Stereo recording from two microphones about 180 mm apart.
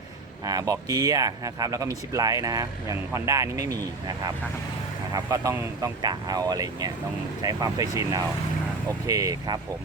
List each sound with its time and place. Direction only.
0.4 s speech: 20° right (ahead or behind)
5.1 s speech: 20° right (ahead or behind)